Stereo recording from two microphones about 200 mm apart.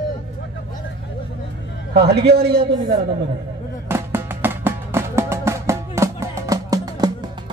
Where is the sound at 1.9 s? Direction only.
55° right (ahead or behind).